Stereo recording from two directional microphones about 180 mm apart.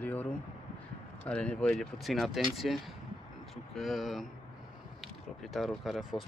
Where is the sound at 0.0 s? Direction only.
10° left (ahead or behind).